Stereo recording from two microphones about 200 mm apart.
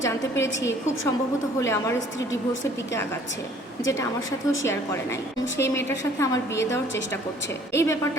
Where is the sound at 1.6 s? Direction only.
15° left (ahead or behind).